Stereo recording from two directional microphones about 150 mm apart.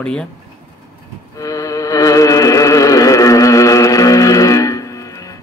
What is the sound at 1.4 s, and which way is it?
Music, 20° left (ahead or behind).